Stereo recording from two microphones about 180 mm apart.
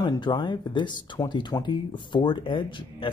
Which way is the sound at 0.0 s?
25° left (ahead or behind).